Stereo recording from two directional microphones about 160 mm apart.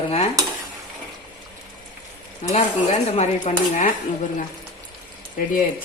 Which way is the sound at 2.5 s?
45° left (ahead or behind).